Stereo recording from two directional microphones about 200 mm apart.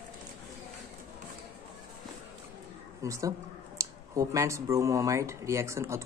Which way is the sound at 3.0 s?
15° right (ahead or behind).